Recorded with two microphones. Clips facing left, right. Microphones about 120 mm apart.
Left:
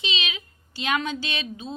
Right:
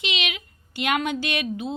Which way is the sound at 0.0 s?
60° right (ahead or behind).